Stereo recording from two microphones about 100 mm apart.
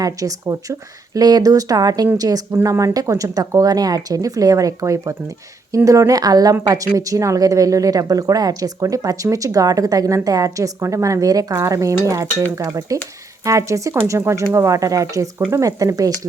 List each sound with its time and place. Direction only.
0.0 s speech: 35° right (ahead or behind)